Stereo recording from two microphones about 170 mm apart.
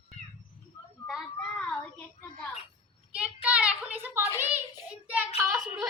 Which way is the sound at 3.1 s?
5° right (ahead or behind).